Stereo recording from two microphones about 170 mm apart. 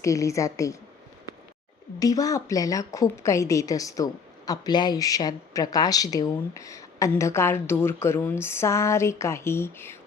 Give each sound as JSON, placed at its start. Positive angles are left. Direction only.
{"t": 0.0, "sound": "a woman's voice", "side_deg": 20}
{"t": 2.0, "sound": "a woman's voice", "side_deg": 20}